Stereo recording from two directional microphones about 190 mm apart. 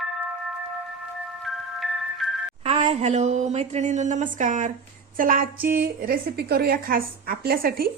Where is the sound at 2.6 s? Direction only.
35° right (ahead or behind).